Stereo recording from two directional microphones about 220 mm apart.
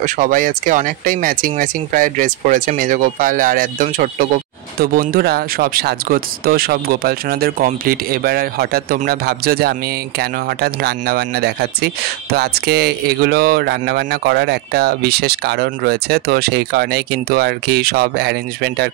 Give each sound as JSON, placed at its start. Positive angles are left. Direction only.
{"t": 0.0, "sound": "speech", "side_deg": -40}